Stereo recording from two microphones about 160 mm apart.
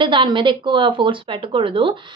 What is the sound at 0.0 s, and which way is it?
A woman's voice, 30° right (ahead or behind).